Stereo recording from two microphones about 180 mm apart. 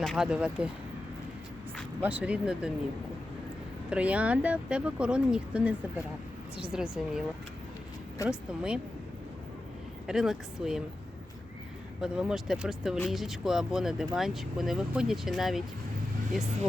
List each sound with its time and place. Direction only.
0.0 s speech: centre (ahead or behind)
2.0 s speech: 10° right (ahead or behind)
3.8 s speech: 5° right (ahead or behind)
8.3 s speech: 5° right (ahead or behind)
10.1 s speech: 5° right (ahead or behind)
11.9 s speech: 5° right (ahead or behind)